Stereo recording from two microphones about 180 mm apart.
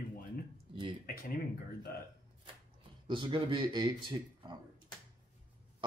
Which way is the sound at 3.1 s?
30° right (ahead or behind).